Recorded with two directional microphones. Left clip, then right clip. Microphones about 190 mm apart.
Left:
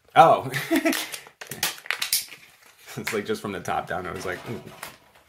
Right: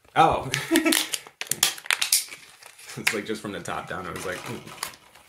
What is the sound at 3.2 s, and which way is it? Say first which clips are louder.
Speech: left 3 dB; 30° left (ahead or behind).